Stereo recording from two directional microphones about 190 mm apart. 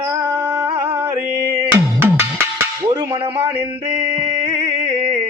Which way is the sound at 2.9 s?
20° right (ahead or behind).